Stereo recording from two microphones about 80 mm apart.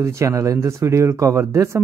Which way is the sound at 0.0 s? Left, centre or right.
Right.